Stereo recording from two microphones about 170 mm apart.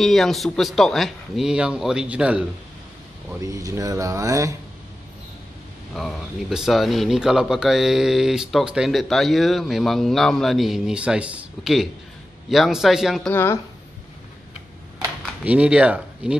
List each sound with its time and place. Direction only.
0.0 s speech: centre (ahead or behind)
3.3 s speech: 20° right (ahead or behind)
5.9 s speech: centre (ahead or behind)
13.3 s speech: 15° left (ahead or behind)
15.4 s speech: 5° right (ahead or behind)